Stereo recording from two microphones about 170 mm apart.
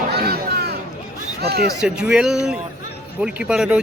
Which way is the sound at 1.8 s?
5° right (ahead or behind).